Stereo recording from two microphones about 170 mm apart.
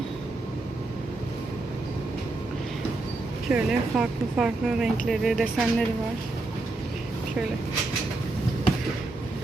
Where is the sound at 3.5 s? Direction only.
5° right (ahead or behind).